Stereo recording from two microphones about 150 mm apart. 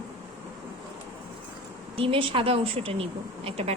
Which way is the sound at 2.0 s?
35° right (ahead or behind).